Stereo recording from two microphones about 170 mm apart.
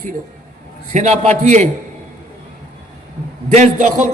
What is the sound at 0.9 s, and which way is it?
Speech, 40° right (ahead or behind).